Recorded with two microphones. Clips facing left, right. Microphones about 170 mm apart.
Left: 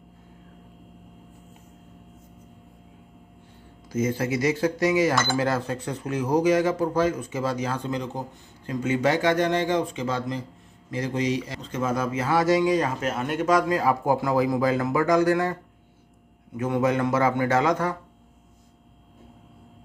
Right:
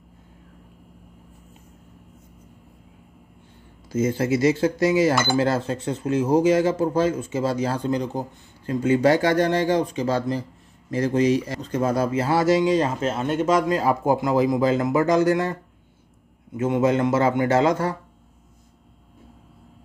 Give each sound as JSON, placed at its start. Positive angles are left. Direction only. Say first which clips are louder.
{"t": 3.9, "sound": "speech", "louder": "right 3 dB", "side_deg": -30}
{"t": 16.5, "sound": "speech", "louder": "right 3 dB", "side_deg": -25}